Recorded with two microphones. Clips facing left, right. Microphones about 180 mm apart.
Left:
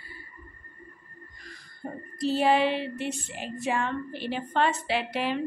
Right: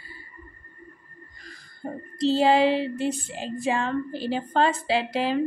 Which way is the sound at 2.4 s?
30° right (ahead or behind).